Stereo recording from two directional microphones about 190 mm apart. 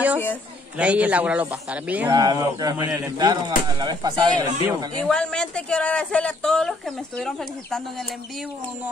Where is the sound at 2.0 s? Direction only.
20° right (ahead or behind).